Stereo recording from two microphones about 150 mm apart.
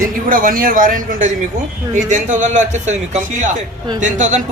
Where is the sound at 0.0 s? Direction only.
70° right (ahead or behind).